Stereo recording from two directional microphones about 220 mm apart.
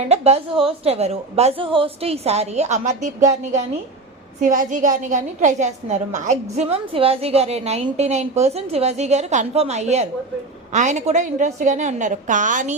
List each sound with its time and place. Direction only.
0.1 s a woman's voice: 30° right (ahead or behind)